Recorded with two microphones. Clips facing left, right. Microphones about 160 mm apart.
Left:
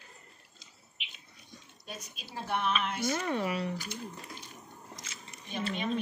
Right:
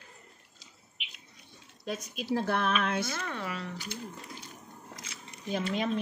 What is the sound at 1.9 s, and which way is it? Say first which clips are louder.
Speech: right 13 dB; 90° right.